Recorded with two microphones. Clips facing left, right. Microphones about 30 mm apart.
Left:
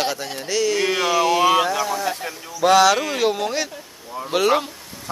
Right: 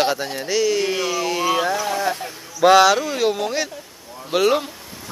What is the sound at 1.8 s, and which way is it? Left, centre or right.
Speech, centre.